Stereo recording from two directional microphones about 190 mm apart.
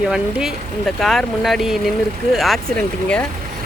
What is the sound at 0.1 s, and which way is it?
Speech, centre (ahead or behind).